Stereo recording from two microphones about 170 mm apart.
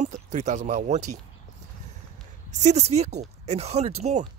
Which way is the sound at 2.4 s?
45° right (ahead or behind).